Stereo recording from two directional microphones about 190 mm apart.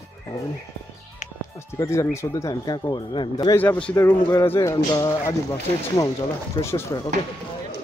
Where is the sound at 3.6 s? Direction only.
5° left (ahead or behind).